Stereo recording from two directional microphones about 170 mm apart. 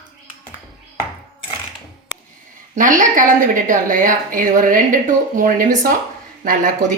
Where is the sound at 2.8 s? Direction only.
50° right (ahead or behind).